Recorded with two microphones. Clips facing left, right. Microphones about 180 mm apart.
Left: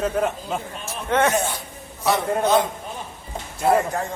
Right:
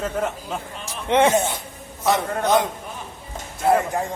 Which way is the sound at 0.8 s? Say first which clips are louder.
Right 3 dB; 15° right (ahead or behind).